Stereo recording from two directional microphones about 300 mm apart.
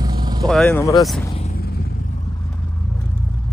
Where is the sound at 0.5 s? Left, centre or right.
Centre.